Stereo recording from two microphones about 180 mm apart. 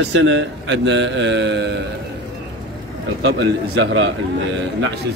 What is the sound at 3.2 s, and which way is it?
A man's voice, 70° right (ahead or behind).